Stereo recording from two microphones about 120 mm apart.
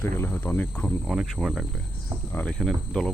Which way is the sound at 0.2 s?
15° left (ahead or behind).